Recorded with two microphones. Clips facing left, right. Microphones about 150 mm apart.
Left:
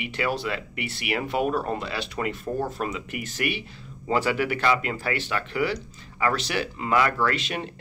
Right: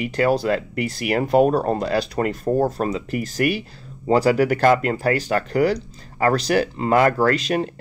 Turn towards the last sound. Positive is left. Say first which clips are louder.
# right 7 dB
turn(degrees=-40)  # may be behind; listen again after turning